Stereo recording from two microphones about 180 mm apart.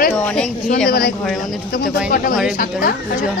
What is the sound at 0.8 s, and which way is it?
Speech, 60° left (ahead or behind).